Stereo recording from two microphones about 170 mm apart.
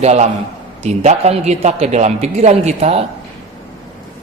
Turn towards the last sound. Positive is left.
turn(degrees=-40)  # may be behind; listen again after turning